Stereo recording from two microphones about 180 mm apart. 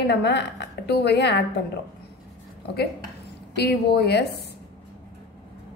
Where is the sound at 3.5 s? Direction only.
65° left (ahead or behind).